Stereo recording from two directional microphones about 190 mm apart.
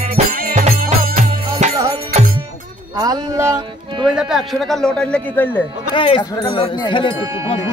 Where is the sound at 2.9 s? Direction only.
20° right (ahead or behind).